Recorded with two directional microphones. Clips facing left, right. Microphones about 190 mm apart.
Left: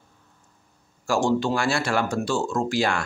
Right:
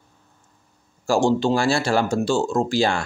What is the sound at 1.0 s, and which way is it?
Speech, 30° right (ahead or behind).